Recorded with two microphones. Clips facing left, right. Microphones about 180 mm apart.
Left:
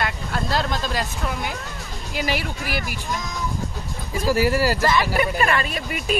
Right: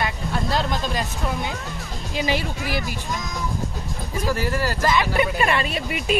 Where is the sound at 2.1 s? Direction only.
20° right (ahead or behind).